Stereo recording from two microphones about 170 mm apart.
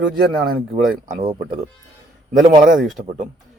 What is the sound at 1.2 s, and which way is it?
Speech, 35° right (ahead or behind).